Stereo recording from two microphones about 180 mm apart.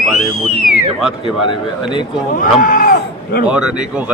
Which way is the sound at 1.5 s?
25° left (ahead or behind).